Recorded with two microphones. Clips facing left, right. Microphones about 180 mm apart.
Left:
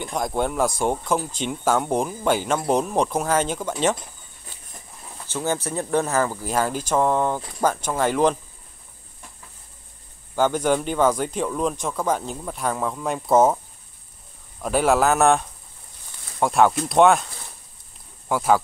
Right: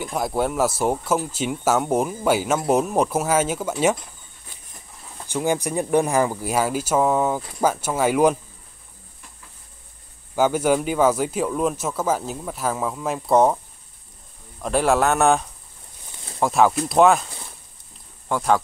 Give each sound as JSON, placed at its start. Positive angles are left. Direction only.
{"t": 0.0, "sound": "speech", "side_deg": -5}
{"t": 5.3, "sound": "speech", "side_deg": -15}
{"t": 10.3, "sound": "speech", "side_deg": -10}
{"t": 14.6, "sound": "speech", "side_deg": 0}
{"t": 18.3, "sound": "speech", "side_deg": 5}